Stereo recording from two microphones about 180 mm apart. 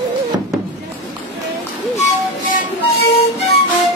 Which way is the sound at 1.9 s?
45° left (ahead or behind).